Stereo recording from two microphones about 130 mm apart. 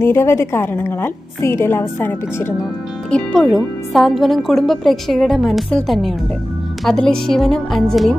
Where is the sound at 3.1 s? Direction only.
5° left (ahead or behind).